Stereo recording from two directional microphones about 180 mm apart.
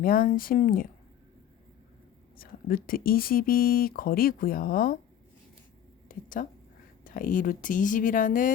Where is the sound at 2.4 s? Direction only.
50° left (ahead or behind).